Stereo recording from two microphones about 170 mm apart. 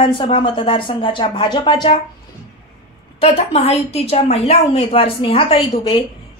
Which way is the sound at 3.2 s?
35° left (ahead or behind).